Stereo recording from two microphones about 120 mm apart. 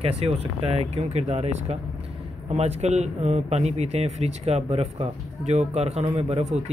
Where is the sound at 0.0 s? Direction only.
55° right (ahead or behind).